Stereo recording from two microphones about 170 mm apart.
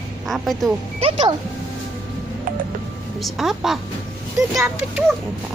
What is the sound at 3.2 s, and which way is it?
Speech, centre (ahead or behind).